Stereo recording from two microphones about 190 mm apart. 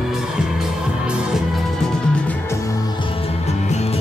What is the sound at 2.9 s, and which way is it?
Music, 30° left (ahead or behind).